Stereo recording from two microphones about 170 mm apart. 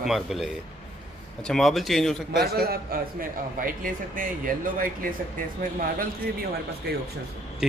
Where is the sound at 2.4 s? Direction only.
65° right (ahead or behind).